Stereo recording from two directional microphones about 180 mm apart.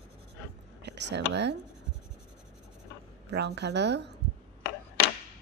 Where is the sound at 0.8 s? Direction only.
75° right (ahead or behind).